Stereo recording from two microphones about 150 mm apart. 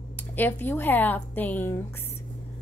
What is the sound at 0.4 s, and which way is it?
A woman's voice, 10° left (ahead or behind).